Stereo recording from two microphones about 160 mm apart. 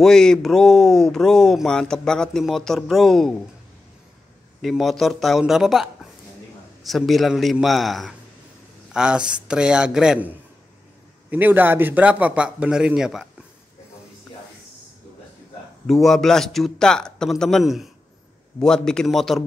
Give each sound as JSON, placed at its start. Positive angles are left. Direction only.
{"t": 0.0, "sound": "speech", "side_deg": 5}
{"t": 4.6, "sound": "a man's voice", "side_deg": 0}
{"t": 15.9, "sound": "speech", "side_deg": 0}